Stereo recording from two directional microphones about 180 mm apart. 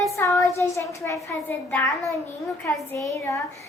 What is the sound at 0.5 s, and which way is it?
A child's voice, 15° left (ahead or behind).